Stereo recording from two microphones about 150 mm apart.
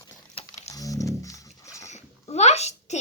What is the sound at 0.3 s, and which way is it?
Wild animals, 45° left (ahead or behind).